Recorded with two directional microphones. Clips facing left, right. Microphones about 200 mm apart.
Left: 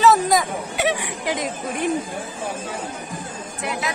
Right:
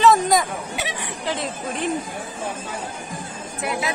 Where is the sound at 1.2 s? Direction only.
15° left (ahead or behind).